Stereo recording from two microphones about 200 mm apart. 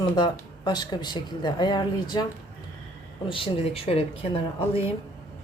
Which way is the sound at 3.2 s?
25° left (ahead or behind).